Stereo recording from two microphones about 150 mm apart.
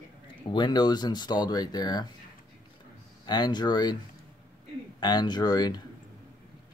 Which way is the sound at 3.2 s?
30° left (ahead or behind).